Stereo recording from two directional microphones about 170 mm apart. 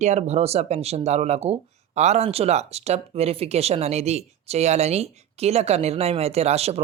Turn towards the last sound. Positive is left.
turn(degrees=-40)  # may be behind; listen again after turning